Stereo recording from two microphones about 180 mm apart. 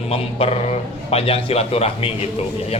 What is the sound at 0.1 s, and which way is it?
A man's voice, 35° left (ahead or behind).